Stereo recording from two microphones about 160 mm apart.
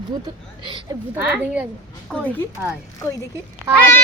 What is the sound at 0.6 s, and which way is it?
Speech, 30° right (ahead or behind).